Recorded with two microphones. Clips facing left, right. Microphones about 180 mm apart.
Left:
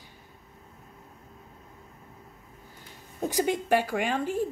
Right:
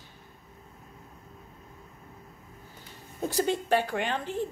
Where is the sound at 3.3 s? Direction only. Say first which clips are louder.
Left 1 dB; 15° left (ahead or behind).